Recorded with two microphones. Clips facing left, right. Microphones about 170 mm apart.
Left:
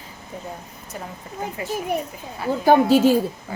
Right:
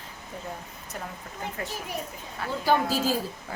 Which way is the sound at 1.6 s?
5° left (ahead or behind).